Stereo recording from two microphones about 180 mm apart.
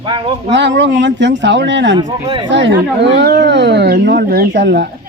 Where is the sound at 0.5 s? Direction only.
80° right.